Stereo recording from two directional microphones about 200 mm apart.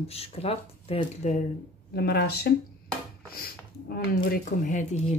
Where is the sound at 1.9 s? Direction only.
50° left (ahead or behind).